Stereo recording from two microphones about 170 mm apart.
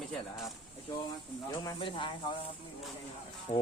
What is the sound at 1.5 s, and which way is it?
Speech, 25° left (ahead or behind).